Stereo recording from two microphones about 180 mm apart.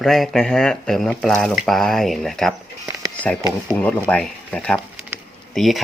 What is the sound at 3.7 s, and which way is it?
Speech, 5° left (ahead or behind).